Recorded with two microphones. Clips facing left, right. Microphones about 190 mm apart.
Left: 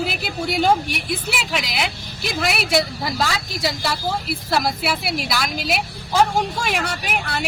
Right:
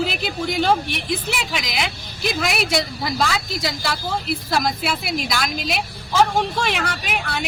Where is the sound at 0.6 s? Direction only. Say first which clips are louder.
Left 1 dB; 10° left (ahead or behind).